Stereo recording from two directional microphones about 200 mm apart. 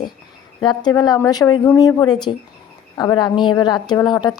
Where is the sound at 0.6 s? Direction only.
20° left (ahead or behind).